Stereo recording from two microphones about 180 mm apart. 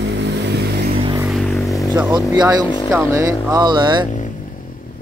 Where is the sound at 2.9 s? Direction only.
15° right (ahead or behind).